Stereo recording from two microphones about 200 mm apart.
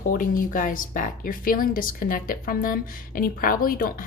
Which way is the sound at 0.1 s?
40° left (ahead or behind).